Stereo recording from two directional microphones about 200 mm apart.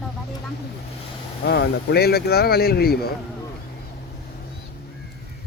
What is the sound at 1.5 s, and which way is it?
Speech, 55° left (ahead or behind).